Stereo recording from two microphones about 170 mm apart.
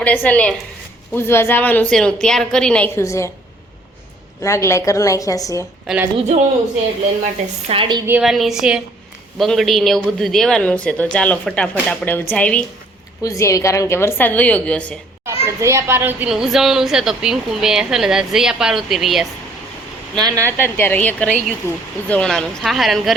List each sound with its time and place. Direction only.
0.0 s a woman's voice: 10° left (ahead or behind)
4.4 s a woman's voice: 15° left (ahead or behind)
5.8 s speech: 5° right (ahead or behind)
6.1 s a man's voice: 40° right (ahead or behind)
7.7 s speech: 30° right (ahead or behind)
8.0 s a child's voice: 5° right (ahead or behind)
13.2 s a woman's voice: 20° left (ahead or behind)
15.2 s a child's voice: 15° right (ahead or behind); by 19.3 s centre (ahead or behind)
20.1 s speech: 20° right (ahead or behind)
20.6 s a woman's voice: 10° left (ahead or behind)